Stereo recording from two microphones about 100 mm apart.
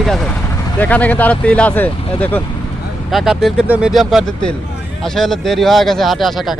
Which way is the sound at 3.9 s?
Centre (ahead or behind).